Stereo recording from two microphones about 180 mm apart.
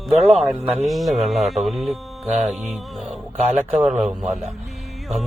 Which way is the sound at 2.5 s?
Centre (ahead or behind).